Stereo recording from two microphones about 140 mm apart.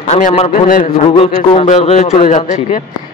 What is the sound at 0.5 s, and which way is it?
Speech, 75° left (ahead or behind).